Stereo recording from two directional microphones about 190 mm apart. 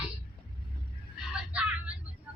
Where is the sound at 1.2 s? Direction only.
5° right (ahead or behind).